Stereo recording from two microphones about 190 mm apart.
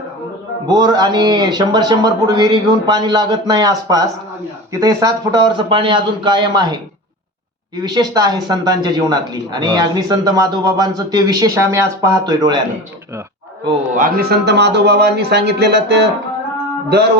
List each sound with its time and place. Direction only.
0.7 s speech: 20° right (ahead or behind)
7.8 s speech: 20° right (ahead or behind)
13.9 s speech: 50° right (ahead or behind)